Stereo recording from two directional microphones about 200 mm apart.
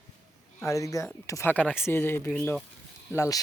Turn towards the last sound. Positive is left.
turn(degrees=15)  # may be behind; listen again after turning